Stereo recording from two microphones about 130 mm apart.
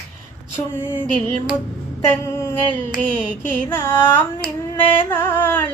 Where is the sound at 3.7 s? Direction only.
20° left (ahead or behind).